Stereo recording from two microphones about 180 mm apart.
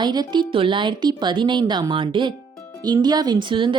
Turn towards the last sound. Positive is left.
turn(degrees=-25)  # may be behind; listen again after turning